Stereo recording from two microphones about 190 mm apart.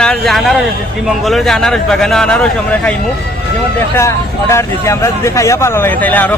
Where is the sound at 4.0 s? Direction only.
15° left (ahead or behind).